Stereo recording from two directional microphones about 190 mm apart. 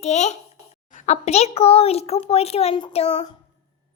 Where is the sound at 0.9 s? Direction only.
40° left (ahead or behind).